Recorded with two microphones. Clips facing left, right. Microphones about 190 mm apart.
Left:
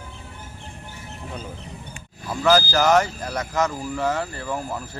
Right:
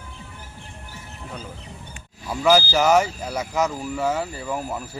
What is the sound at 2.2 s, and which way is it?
Speech, 10° right (ahead or behind).